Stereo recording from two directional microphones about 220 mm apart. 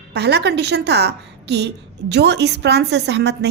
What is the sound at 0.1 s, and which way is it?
A woman's voice, 50° right (ahead or behind).